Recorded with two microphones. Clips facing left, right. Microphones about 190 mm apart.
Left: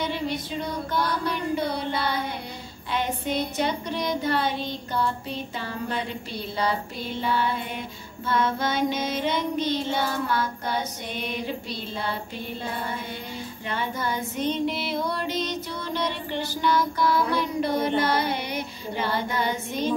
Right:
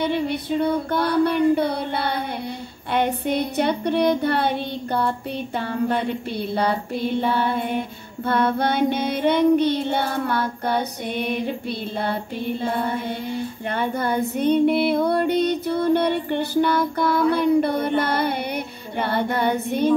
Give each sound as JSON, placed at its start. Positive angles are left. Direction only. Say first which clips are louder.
{"t": 0.0, "sound": "child singing", "louder": "right 5 dB", "side_deg": -60}
{"t": 12.6, "sound": "child singing", "louder": "right 7 dB", "side_deg": -55}